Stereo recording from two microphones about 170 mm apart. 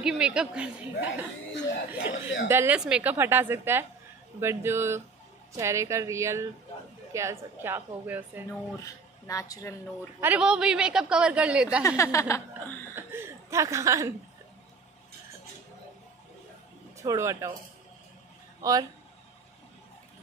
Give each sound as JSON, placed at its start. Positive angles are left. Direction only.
{"t": 0.0, "sound": "a woman's voice", "side_deg": -5}
{"t": 8.7, "sound": "speech", "side_deg": 20}
{"t": 10.2, "sound": "a woman's voice", "side_deg": -5}
{"t": 12.0, "sound": "speech", "side_deg": 20}
{"t": 12.9, "sound": "a woman's voice", "side_deg": -15}
{"t": 17.0, "sound": "a woman's voice", "side_deg": -20}
{"t": 18.6, "sound": "speech", "side_deg": -20}